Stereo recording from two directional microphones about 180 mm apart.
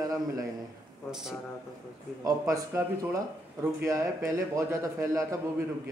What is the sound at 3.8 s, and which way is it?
A man's voice, 15° right (ahead or behind).